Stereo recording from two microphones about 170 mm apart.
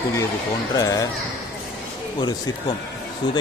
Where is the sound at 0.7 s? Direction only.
20° left (ahead or behind).